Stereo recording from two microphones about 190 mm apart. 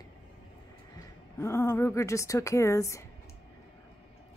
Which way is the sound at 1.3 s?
15° left (ahead or behind).